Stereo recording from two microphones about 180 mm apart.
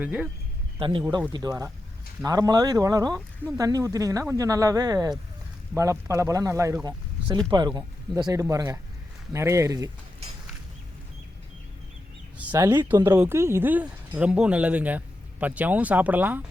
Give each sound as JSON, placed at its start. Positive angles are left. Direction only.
{"t": 0.0, "sound": "speech", "side_deg": -10}
{"t": 0.8, "sound": "speech", "side_deg": -30}
{"t": 12.4, "sound": "speech", "side_deg": -10}